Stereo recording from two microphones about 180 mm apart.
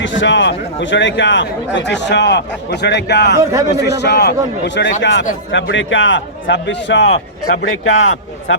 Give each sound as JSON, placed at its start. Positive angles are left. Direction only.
{"t": 0.0, "sound": "a man's voice", "side_deg": 90}